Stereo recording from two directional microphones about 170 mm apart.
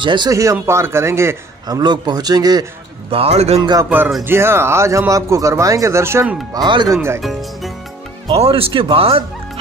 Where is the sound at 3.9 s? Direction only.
5° right (ahead or behind).